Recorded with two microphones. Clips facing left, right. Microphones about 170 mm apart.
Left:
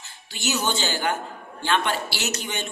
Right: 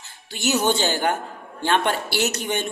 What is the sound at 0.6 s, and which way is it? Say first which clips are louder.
A woman's voice: right 4 dB; 50° right (ahead or behind).